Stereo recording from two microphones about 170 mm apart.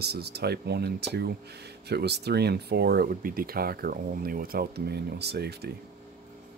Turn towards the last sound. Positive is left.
turn(degrees=-70)  # may be behind; listen again after turning